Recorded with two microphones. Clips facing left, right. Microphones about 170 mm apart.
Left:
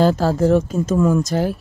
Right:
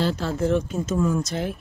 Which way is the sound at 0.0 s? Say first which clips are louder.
Left 8 dB; 45° left (ahead or behind).